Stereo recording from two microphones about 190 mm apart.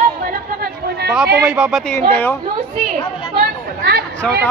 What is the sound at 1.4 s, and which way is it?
Speech, 5° right (ahead or behind).